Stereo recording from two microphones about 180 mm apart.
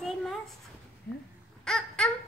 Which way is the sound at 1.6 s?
5° left (ahead or behind).